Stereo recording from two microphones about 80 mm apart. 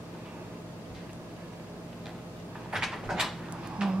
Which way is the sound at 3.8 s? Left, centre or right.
Centre.